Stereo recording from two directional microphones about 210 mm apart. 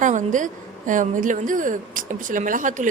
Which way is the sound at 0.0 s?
35° right (ahead or behind).